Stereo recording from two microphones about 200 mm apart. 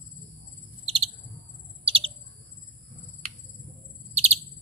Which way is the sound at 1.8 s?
25° right (ahead or behind).